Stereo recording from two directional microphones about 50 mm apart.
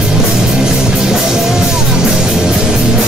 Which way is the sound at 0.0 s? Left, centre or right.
Centre.